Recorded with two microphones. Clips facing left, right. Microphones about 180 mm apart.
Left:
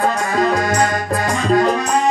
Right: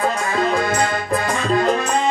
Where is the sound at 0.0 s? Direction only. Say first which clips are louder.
Left 3 dB; 40° left (ahead or behind).